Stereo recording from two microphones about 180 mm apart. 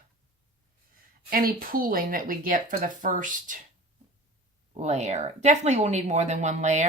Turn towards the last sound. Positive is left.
turn(degrees=-40)  # may be behind; listen again after turning